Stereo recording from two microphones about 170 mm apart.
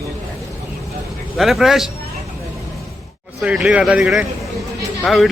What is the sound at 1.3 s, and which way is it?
Speech, centre (ahead or behind).